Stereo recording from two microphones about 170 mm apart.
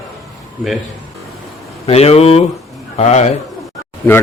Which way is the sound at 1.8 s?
35° left (ahead or behind).